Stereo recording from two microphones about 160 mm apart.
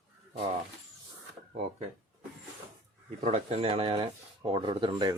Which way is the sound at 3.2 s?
40° right (ahead or behind).